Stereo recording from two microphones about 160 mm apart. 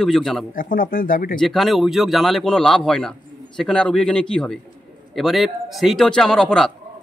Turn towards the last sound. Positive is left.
turn(degrees=5)  # may be behind; listen again after turning